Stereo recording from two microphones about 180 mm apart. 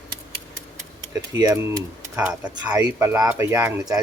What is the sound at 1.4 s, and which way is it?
Speech, 20° right (ahead or behind).